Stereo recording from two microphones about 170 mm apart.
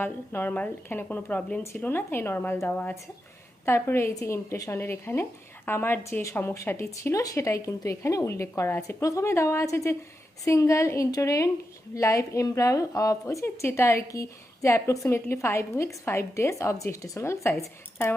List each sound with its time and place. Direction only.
0.0 s a woman's voice: 10° left (ahead or behind)